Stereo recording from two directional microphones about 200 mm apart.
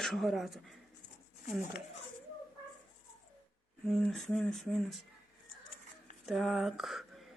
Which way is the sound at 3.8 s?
Centre (ahead or behind).